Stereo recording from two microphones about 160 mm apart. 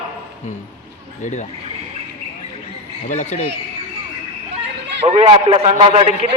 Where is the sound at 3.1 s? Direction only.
45° left (ahead or behind).